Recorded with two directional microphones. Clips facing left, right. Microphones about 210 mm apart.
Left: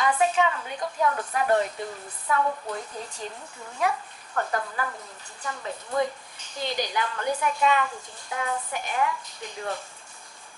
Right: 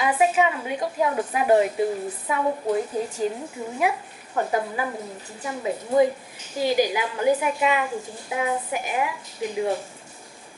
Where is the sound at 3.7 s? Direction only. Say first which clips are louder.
Right 2 dB; 10° right (ahead or behind).